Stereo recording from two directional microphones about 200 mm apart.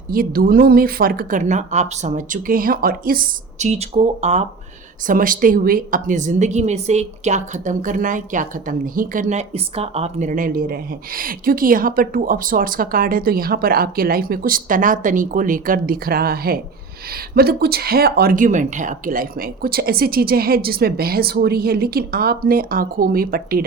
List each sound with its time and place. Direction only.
0.1 s a woman's voice: 45° right (ahead or behind)
5.0 s a woman's voice: 45° right (ahead or behind)